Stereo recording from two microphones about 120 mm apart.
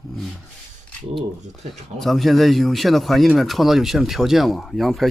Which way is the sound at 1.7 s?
Centre (ahead or behind).